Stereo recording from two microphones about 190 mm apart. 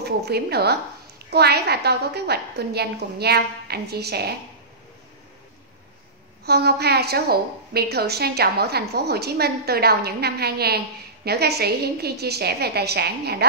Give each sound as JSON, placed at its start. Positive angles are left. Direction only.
{"t": 0.0, "sound": "a woman's voice", "side_deg": -60}
{"t": 6.4, "sound": "a woman's voice", "side_deg": -55}